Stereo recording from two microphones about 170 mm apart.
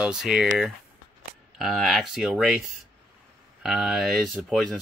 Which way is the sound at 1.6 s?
Centre (ahead or behind).